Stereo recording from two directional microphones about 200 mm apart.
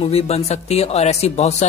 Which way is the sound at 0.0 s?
30° left (ahead or behind).